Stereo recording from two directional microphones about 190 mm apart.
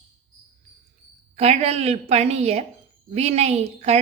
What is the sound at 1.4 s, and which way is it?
A woman's voice, 35° right (ahead or behind).